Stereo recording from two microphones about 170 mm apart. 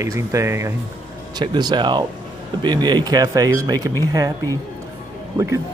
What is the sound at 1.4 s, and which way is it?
Speech, 25° right (ahead or behind).